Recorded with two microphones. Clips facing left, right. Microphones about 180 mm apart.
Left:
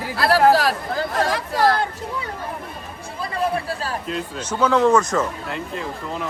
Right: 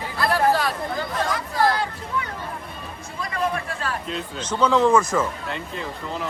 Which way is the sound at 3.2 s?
30° left (ahead or behind).